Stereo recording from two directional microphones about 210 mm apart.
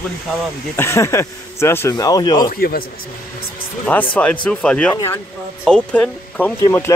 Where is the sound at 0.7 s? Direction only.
15° left (ahead or behind).